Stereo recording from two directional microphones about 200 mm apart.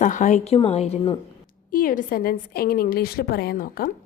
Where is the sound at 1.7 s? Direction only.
45° left (ahead or behind).